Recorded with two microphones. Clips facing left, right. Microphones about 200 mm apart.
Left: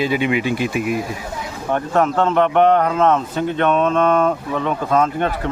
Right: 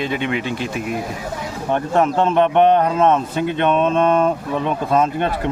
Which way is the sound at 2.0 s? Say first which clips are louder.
Right 1 dB; 15° right (ahead or behind).